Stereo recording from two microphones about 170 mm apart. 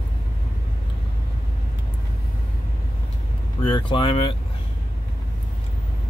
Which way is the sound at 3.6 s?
30° left (ahead or behind).